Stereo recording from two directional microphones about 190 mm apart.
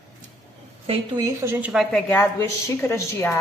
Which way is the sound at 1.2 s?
15° right (ahead or behind).